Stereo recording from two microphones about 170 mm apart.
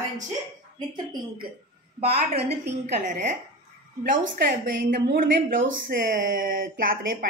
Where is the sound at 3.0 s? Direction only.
45° right (ahead or behind).